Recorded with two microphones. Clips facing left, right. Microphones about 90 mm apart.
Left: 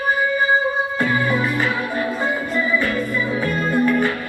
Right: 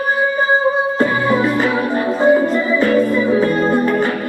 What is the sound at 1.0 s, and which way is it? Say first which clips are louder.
Music: right 3 dB; 25° right (ahead or behind).